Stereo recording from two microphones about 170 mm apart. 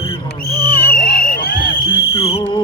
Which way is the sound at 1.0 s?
60° left (ahead or behind).